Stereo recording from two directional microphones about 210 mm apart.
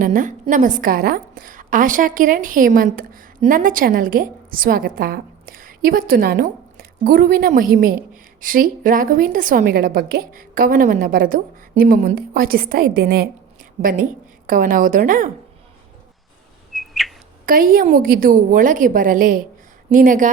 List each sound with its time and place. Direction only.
0.0 s a woman's voice: 40° right (ahead or behind)
16.7 s bird: centre (ahead or behind)
17.4 s a woman's voice: 40° right (ahead or behind)